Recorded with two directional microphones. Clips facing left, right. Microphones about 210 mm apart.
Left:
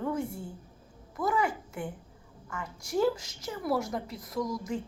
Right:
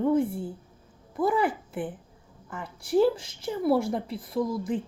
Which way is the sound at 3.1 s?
30° right (ahead or behind).